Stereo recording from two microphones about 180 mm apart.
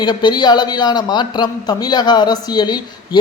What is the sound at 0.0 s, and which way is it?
A man's voice, 25° left (ahead or behind).